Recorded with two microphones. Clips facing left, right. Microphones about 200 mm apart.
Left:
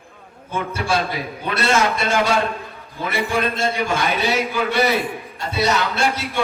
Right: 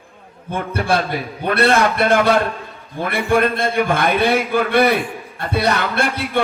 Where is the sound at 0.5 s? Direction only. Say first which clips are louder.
Right 3 dB; 60° right (ahead or behind).